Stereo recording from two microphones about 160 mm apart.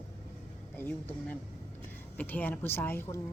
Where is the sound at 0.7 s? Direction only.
10° left (ahead or behind).